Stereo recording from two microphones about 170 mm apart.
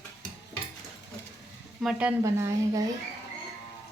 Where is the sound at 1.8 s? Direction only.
5° right (ahead or behind).